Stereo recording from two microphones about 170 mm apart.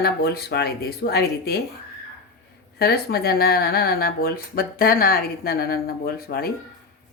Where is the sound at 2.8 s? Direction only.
65° left (ahead or behind).